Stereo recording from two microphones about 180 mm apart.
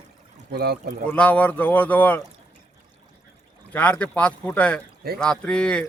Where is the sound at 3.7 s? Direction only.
10° left (ahead or behind).